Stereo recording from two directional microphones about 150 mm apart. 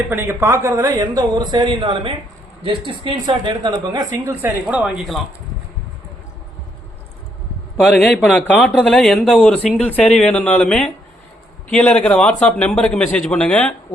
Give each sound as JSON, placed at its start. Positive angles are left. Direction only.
{"t": 0.1, "sound": "speech", "side_deg": -15}
{"t": 7.8, "sound": "a man's voice", "side_deg": 5}